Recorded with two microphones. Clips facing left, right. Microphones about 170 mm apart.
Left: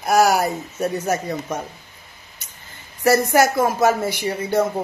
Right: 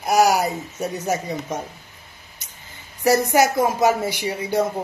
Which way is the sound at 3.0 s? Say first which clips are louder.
Left 1 dB; 15° right (ahead or behind).